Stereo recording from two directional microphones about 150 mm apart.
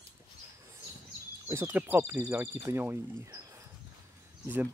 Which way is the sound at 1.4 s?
15° right (ahead or behind).